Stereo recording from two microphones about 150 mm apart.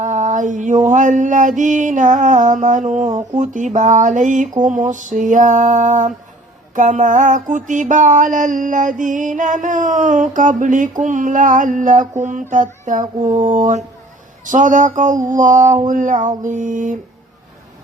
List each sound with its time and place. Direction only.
0.0 s music: 55° right (ahead or behind)